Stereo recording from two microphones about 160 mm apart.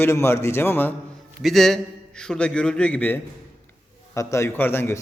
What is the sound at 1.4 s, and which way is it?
Speech, centre (ahead or behind).